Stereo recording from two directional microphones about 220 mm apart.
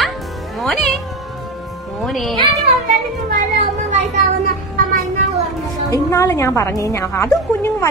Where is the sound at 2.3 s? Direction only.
20° right (ahead or behind).